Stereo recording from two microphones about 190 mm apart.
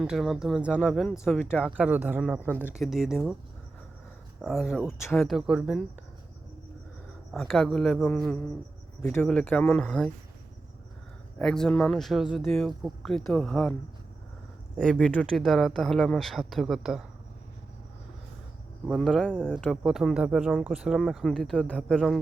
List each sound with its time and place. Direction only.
0.0 s speech: centre (ahead or behind)
4.4 s speech: centre (ahead or behind)
7.3 s speech: centre (ahead or behind)
11.3 s speech: 5° left (ahead or behind)
14.8 s speech: 5° left (ahead or behind)
18.9 s speech: centre (ahead or behind)